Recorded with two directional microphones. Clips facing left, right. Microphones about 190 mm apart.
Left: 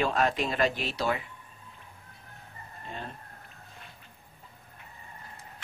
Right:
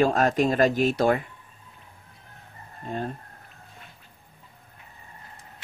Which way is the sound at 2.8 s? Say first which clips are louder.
Right 9 dB; 45° right (ahead or behind).